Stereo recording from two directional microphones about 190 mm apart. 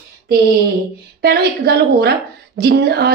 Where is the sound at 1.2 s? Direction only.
60° right (ahead or behind).